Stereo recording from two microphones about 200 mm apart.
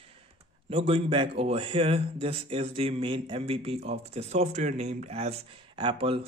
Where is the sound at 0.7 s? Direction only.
30° right (ahead or behind).